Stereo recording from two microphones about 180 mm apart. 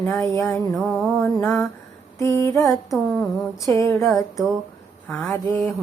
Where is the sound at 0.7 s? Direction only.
Centre (ahead or behind).